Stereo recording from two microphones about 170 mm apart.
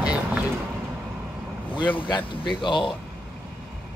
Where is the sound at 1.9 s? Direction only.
30° left (ahead or behind).